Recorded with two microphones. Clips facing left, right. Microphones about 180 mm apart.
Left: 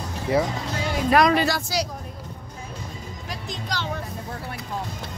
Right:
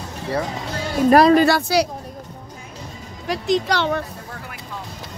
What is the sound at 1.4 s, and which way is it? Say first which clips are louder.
Speech: right 8 dB; 65° right (ahead or behind).